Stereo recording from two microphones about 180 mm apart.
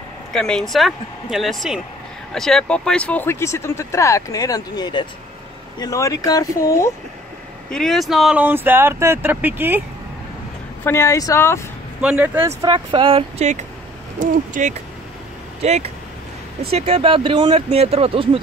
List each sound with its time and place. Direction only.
0.3 s speech: 5° left (ahead or behind)
7.7 s speech: centre (ahead or behind)
10.8 s speech: 15° left (ahead or behind)
12.0 s speech: 5° right (ahead or behind)
12.6 s speech: 30° right (ahead or behind)